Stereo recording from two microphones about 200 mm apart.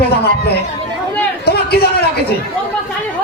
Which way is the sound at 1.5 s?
55° left (ahead or behind).